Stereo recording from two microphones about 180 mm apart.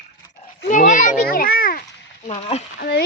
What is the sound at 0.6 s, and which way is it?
Children playing, 45° left (ahead or behind).